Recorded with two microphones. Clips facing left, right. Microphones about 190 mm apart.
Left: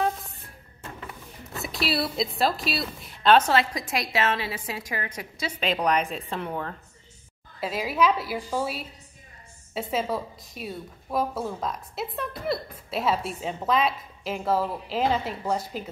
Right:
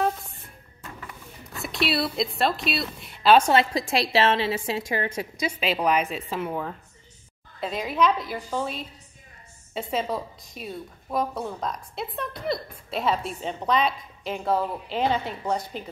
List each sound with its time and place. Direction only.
0.0 s music: centre (ahead or behind)
1.5 s a woman's voice: centre (ahead or behind)
3.5 s a woman's voice: 30° right (ahead or behind)
5.4 s a woman's voice: 10° right (ahead or behind)
7.6 s a woman's voice: 5° left (ahead or behind)